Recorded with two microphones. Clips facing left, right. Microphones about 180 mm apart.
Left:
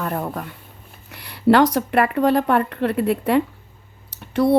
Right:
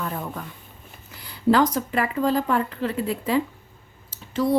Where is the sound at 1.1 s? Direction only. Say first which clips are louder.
Left 4 dB; 70° left (ahead or behind).